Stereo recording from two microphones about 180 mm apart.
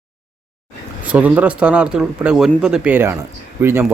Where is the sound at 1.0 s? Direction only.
10° right (ahead or behind).